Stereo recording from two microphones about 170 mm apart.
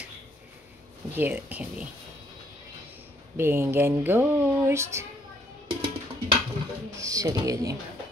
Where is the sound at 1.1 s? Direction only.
10° right (ahead or behind).